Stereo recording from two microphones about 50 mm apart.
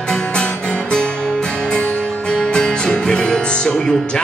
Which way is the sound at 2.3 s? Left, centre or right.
Centre.